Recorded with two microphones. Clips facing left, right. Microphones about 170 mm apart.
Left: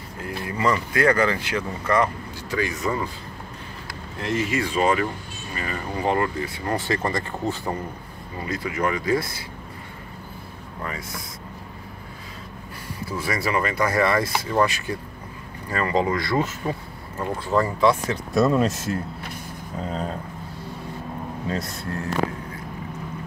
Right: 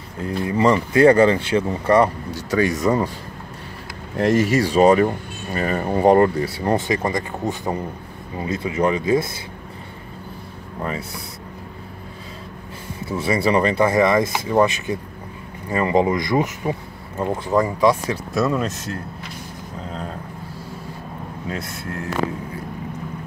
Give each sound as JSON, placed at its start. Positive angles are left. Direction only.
{"t": 0.2, "sound": "speech", "side_deg": -25}
{"t": 2.5, "sound": "speech", "side_deg": -40}
{"t": 4.2, "sound": "speech", "side_deg": -45}
{"t": 10.8, "sound": "speech", "side_deg": -25}
{"t": 13.1, "sound": "speech", "side_deg": -25}
{"t": 18.3, "sound": "speech", "side_deg": 0}